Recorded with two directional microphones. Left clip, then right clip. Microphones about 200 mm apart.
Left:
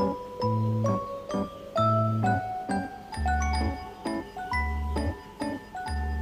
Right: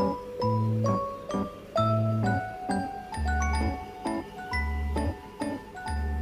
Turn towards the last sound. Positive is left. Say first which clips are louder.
# left 1 dB
turn(degrees=0)  # may be behind; listen again after turning